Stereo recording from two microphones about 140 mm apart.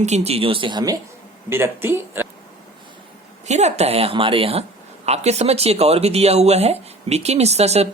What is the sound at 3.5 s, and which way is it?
Speech, 50° right (ahead or behind).